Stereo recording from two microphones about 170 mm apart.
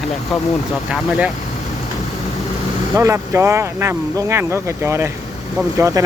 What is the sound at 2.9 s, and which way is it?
Speech, 15° right (ahead or behind).